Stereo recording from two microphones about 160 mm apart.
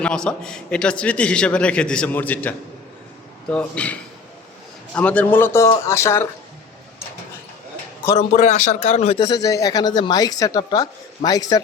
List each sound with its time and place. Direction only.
0.0 s a man's voice: 5° left (ahead or behind)
4.9 s a man's voice: 10° left (ahead or behind)
8.4 s speech: 45° left (ahead or behind)
9.2 s speech: 25° left (ahead or behind)